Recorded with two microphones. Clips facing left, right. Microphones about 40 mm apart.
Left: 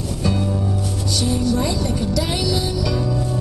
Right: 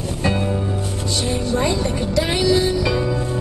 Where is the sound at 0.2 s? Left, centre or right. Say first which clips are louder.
Right 1 dB; right.